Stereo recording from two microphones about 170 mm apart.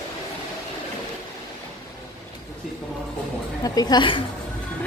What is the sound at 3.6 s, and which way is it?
Speech, 20° left (ahead or behind).